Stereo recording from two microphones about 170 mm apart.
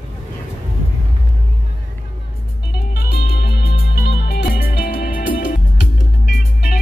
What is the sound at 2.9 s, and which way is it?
Music, 65° left (ahead or behind).